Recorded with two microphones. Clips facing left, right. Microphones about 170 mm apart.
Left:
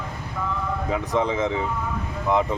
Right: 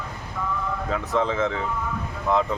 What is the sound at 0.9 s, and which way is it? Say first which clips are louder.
Speech: left 1 dB; 15° left (ahead or behind).